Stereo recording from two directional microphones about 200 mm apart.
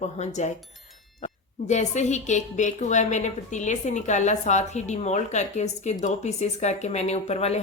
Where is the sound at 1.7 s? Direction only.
35° left (ahead or behind).